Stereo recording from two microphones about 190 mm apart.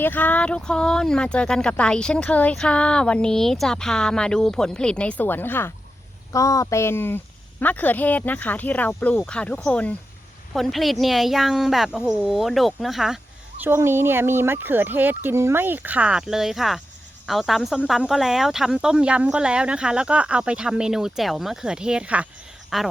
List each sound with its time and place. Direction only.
0.0 s speech: 10° left (ahead or behind)
13.6 s speech: 10° right (ahead or behind)